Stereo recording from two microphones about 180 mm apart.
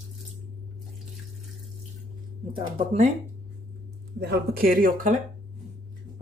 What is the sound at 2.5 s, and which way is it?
Speech, 35° right (ahead or behind).